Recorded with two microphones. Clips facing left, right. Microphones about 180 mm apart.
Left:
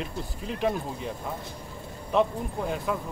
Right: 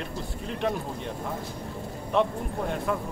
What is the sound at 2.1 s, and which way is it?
Speech, centre (ahead or behind).